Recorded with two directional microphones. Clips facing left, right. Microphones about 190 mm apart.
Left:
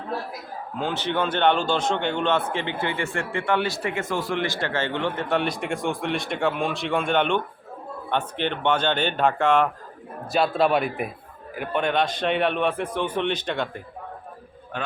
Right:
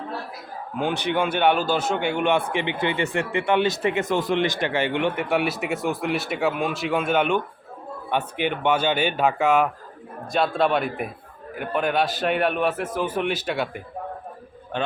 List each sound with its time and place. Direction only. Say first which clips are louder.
0.8 s a man's voice: right 2 dB; 15° right (ahead or behind)
14.7 s a man's voice: right 5 dB; 25° right (ahead or behind)